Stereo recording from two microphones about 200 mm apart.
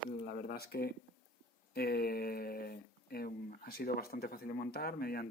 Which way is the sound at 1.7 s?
50° left (ahead or behind).